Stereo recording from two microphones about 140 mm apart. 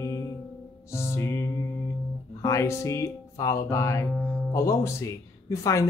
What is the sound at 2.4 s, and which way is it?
Speech, 20° left (ahead or behind).